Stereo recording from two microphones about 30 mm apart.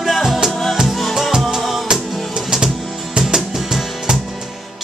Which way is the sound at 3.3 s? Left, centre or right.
Centre.